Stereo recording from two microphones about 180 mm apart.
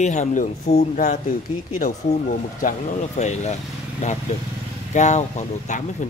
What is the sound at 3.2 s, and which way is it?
Speech, 40° left (ahead or behind).